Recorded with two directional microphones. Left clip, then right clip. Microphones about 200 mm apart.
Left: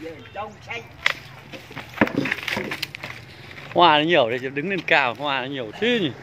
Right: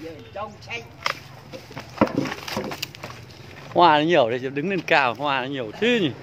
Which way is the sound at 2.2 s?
20° left (ahead or behind).